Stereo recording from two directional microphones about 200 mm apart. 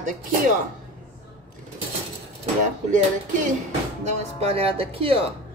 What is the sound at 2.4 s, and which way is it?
Speech, 35° right (ahead or behind).